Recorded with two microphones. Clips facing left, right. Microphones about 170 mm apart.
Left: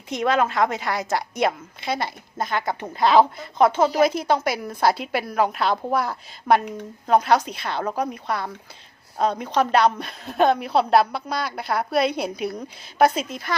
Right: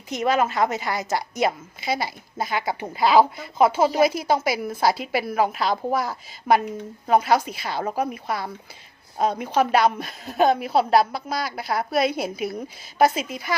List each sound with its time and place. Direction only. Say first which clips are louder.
0.1 s a woman's voice: even; 5° right (ahead or behind)